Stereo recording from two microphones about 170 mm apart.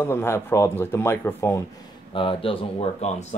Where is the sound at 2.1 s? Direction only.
30° left (ahead or behind).